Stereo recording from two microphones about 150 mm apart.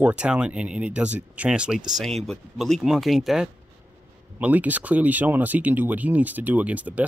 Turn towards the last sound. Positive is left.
turn(degrees=-10)  # may be behind; listen again after turning